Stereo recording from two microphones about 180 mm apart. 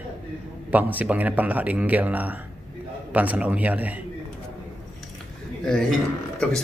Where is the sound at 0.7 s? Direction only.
10° right (ahead or behind).